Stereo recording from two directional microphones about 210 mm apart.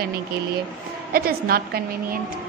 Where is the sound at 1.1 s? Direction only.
45° right (ahead or behind).